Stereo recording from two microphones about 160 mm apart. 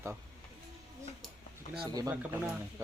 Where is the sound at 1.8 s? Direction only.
25° right (ahead or behind).